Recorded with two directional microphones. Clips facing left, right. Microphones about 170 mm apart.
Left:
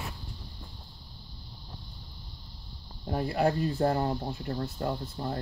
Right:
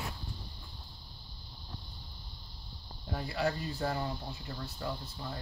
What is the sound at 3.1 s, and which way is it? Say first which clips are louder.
Speech: left 7 dB; 50° left (ahead or behind).